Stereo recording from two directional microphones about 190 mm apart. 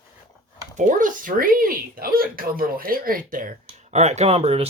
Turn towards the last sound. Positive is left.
turn(degrees=-30)  # may be behind; listen again after turning